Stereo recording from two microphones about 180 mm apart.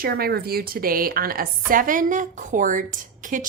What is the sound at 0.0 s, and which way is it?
A woman's voice, 60° right (ahead or behind).